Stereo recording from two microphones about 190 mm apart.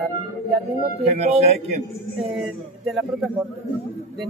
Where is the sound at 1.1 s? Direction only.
35° right (ahead or behind).